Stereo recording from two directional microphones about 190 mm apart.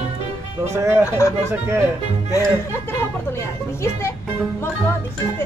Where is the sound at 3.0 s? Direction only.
15° left (ahead or behind).